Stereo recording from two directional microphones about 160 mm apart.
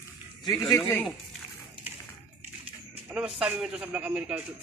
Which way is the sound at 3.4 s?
5° right (ahead or behind).